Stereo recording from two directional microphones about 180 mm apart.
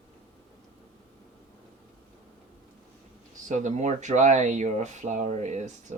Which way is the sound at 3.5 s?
40° right (ahead or behind).